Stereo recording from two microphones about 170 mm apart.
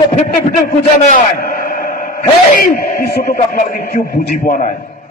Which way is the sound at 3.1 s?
70° left (ahead or behind).